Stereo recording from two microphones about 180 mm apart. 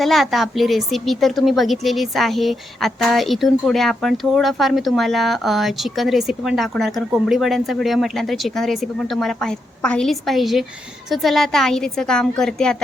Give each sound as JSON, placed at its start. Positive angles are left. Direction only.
{"t": 0.0, "sound": "a woman's voice", "side_deg": 0}